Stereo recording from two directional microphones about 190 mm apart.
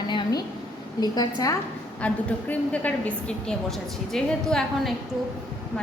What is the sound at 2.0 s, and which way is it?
A woman's voice, 5° left (ahead or behind).